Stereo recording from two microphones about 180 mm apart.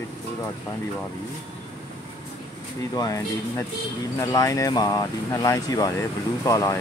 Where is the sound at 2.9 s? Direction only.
20° left (ahead or behind).